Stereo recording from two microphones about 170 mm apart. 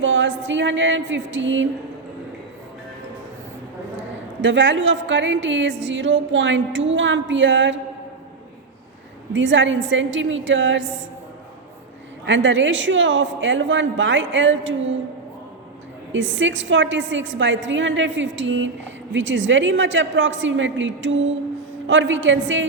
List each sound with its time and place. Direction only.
0.0 s a woman's voice: 90° right
4.4 s a woman's voice: 90° right
9.3 s a woman's voice: 90° right
12.2 s a woman's voice: 90° right
16.1 s a woman's voice: 90° right